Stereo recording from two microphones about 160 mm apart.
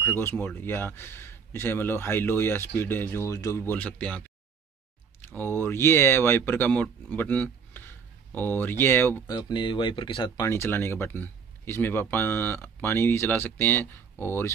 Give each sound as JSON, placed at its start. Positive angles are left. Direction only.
{"t": 0.0, "sound": "speech", "side_deg": 15}
{"t": 5.2, "sound": "speech", "side_deg": 15}
{"t": 9.4, "sound": "speech", "side_deg": 30}
{"t": 10.4, "sound": "speech", "side_deg": 15}